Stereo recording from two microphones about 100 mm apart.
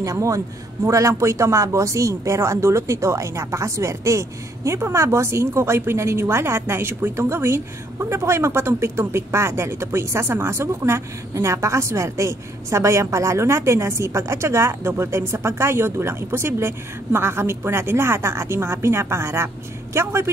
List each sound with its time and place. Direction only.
0.0 s a man's voice: 30° right (ahead or behind)